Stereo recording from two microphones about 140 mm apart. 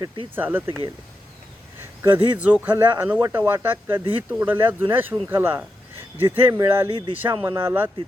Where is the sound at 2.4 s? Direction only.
10° right (ahead or behind).